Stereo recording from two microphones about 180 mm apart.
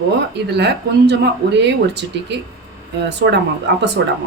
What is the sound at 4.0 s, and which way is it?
Speech, 75° right (ahead or behind).